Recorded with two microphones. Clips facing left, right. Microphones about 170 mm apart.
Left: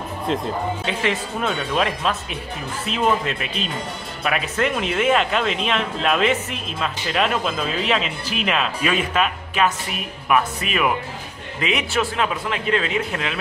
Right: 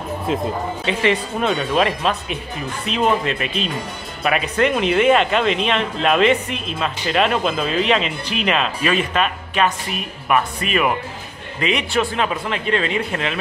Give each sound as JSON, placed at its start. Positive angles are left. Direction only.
{"t": 0.3, "sound": "speech", "side_deg": -5}